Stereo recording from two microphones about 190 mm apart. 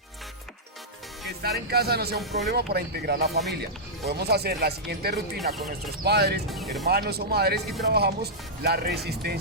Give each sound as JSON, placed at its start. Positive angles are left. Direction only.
{"t": 1.4, "sound": "speech", "side_deg": -55}